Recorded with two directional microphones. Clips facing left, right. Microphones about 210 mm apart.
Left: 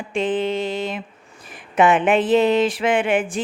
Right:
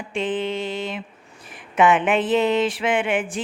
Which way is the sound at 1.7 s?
40° left (ahead or behind).